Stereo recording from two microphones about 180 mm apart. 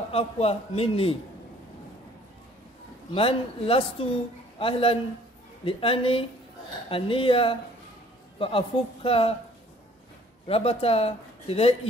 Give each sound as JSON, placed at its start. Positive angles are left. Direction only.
{"t": 0.1, "sound": "speech", "side_deg": 35}
{"t": 3.2, "sound": "speech", "side_deg": 30}
{"t": 10.4, "sound": "speech", "side_deg": 35}